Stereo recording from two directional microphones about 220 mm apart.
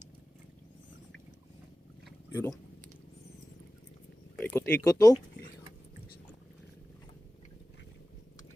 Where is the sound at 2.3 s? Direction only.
10° left (ahead or behind).